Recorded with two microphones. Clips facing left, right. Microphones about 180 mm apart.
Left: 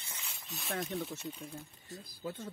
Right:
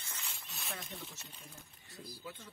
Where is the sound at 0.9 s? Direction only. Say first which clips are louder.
Left 11 dB; 65° left (ahead or behind).